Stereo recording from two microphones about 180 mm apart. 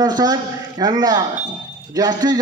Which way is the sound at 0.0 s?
20° right (ahead or behind).